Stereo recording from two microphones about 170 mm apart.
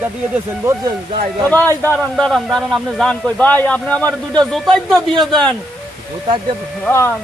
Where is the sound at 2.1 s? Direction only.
Centre (ahead or behind).